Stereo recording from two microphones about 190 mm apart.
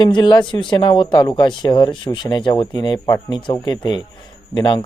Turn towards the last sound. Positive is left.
turn(degrees=25)  # may be behind; listen again after turning